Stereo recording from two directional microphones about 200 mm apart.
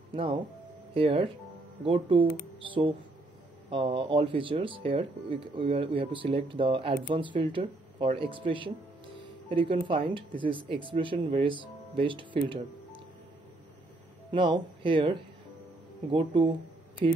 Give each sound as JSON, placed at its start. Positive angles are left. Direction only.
{"t": 0.1, "sound": "speech", "side_deg": -25}
{"t": 3.7, "sound": "speech", "side_deg": -25}
{"t": 14.3, "sound": "speech", "side_deg": -25}